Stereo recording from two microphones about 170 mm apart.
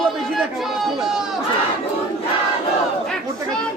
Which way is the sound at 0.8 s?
5° right (ahead or behind).